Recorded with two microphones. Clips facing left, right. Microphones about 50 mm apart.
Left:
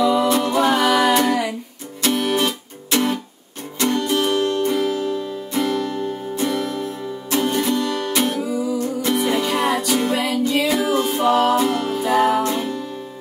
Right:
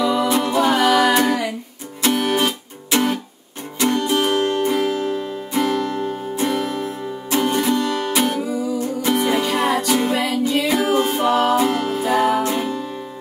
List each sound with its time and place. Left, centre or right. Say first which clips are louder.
0.0 s music: left 1 dB; centre
2.0 s music: right 1 dB; centre; by 5.3 s right
5.5 s music: right 2 dB; centre
5.9 s music: right 1 dB; right; by 11.7 s centre
11.7 s music: right 1 dB; right
12.0 s music: left 1 dB; centre
12.5 s music: right 1 dB; centre